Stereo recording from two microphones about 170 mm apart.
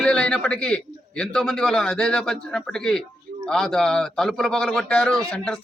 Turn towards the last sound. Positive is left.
turn(degrees=5)  # may be behind; listen again after turning